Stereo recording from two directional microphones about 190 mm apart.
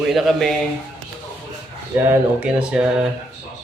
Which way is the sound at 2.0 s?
10° right (ahead or behind).